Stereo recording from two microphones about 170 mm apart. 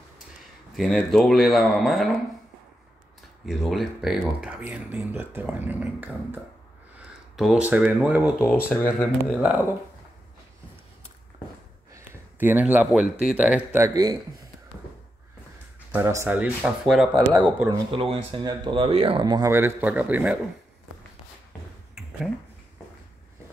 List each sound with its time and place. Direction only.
0.7 s speech: centre (ahead or behind)
3.4 s speech: centre (ahead or behind)
8.5 s speech: 10° left (ahead or behind)
11.9 s a sound: 15° right (ahead or behind)
13.2 s speech: 5° right (ahead or behind)
15.9 s speech: 15° right (ahead or behind)
17.6 s speech: 30° right (ahead or behind); by 20.3 s 10° right (ahead or behind)